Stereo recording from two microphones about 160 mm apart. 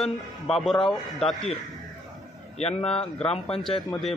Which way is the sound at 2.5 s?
40° left (ahead or behind).